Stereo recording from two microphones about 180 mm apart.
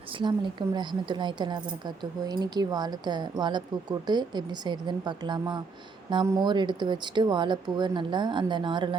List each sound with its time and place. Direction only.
0.2 s speech: 25° right (ahead or behind)